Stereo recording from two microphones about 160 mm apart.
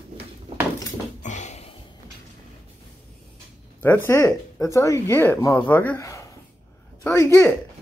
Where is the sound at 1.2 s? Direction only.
45° left (ahead or behind).